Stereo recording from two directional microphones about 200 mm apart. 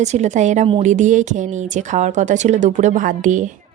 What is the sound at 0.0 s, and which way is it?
A woman's voice, 35° right (ahead or behind).